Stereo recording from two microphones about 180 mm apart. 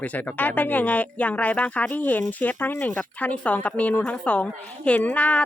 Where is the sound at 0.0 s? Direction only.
10° left (ahead or behind).